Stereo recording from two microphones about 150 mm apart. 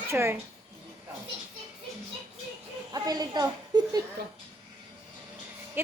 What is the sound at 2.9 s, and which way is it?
A woman's voice, 25° right (ahead or behind).